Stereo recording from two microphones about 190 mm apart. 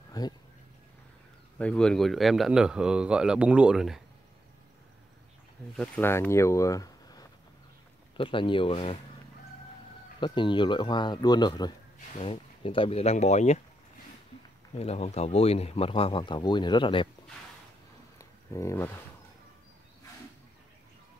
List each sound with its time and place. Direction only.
0.2 s speech: 20° left (ahead or behind)
1.6 s a man's voice: 5° left (ahead or behind)
5.8 s speech: 10° left (ahead or behind); by 8.9 s 30° left (ahead or behind)
10.2 s speech: 25° left (ahead or behind)
14.8 s speech: 35° left (ahead or behind)
18.5 s speech: 15° left (ahead or behind)